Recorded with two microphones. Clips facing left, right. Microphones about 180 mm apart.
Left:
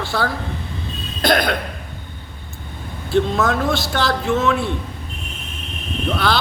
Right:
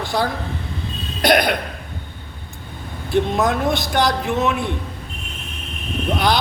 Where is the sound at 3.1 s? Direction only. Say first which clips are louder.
Even; 15° right (ahead or behind).